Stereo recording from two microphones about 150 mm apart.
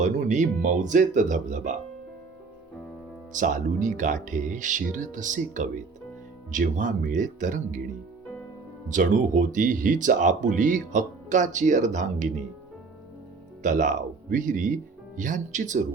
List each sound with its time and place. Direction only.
0.0 s speech: 55° right (ahead or behind)
3.3 s speech: 60° right (ahead or behind)
8.9 s speech: 60° right (ahead or behind)
13.6 s speech: 60° right (ahead or behind)